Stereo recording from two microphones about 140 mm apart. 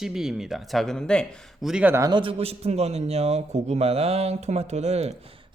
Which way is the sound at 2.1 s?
35° right (ahead or behind).